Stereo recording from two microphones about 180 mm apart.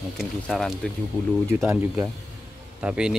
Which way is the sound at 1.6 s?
10° right (ahead or behind).